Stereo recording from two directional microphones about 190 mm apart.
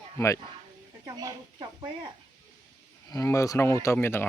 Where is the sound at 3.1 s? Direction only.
15° left (ahead or behind).